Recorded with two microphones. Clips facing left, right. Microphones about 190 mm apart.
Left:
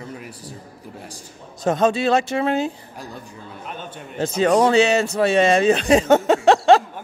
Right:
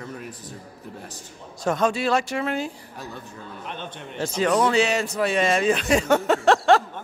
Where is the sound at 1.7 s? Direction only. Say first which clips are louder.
Left 4 dB; 25° left (ahead or behind).